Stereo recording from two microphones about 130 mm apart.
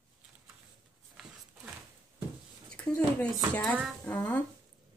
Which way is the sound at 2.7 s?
10° left (ahead or behind).